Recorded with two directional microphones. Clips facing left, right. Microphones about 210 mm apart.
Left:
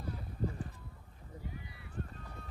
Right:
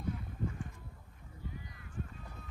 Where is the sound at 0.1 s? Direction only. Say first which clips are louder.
Left 2 dB; 35° left (ahead or behind).